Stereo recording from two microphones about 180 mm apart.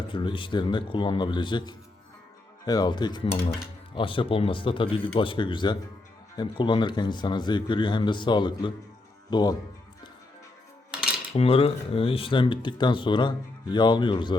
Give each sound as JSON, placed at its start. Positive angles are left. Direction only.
{"t": 0.1, "sound": "speech", "side_deg": 25}
{"t": 11.3, "sound": "speech", "side_deg": 30}